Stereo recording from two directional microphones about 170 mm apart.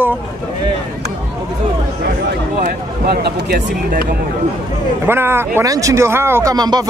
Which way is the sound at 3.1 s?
75° right (ahead or behind).